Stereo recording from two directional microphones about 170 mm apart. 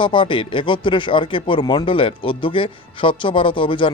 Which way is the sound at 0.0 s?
30° left (ahead or behind).